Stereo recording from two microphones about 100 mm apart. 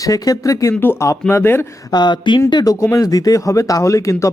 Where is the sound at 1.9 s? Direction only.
50° left (ahead or behind).